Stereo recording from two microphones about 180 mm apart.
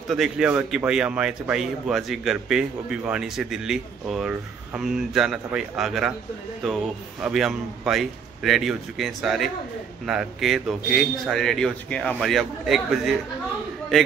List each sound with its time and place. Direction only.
0.1 s a man's voice: 5° right (ahead or behind)